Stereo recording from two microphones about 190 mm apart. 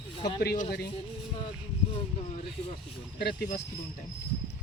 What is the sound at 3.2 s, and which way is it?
Speech, 60° left (ahead or behind).